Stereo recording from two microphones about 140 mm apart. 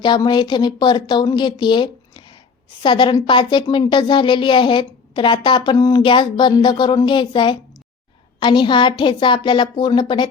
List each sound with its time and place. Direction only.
0.0 s speech: 30° left (ahead or behind)